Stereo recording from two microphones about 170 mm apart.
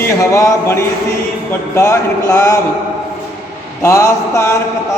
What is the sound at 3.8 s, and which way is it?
Speech, 20° left (ahead or behind).